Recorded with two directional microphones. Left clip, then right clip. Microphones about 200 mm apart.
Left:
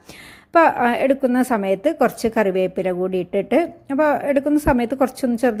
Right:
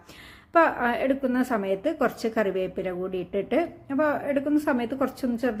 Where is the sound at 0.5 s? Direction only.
35° left (ahead or behind).